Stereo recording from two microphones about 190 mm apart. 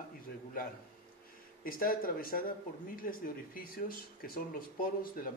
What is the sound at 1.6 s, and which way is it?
Speech, 50° left (ahead or behind).